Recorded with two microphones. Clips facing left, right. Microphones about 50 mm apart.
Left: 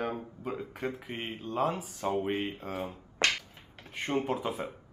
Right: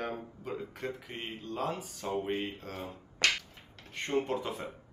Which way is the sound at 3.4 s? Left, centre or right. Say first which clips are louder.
Left 1 dB; centre.